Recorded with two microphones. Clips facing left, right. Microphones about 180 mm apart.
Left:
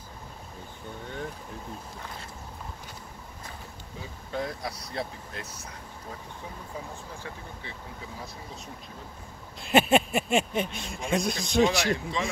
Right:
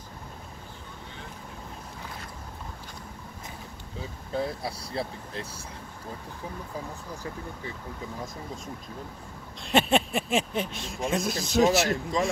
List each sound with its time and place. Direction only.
4.3 s speech: 30° right (ahead or behind)
9.6 s speech: centre (ahead or behind)